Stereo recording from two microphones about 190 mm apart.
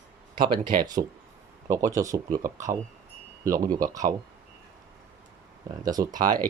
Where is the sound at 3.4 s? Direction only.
15° right (ahead or behind).